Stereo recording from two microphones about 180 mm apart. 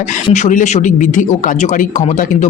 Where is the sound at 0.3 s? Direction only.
40° left (ahead or behind).